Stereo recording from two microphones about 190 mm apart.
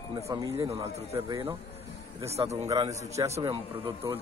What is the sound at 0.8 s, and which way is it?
Speech, 30° right (ahead or behind).